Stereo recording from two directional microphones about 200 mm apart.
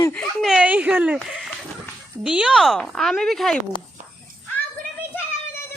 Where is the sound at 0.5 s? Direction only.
5° right (ahead or behind).